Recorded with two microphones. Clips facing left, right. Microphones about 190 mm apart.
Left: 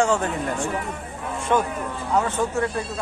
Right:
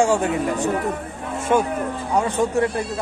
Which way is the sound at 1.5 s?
15° right (ahead or behind).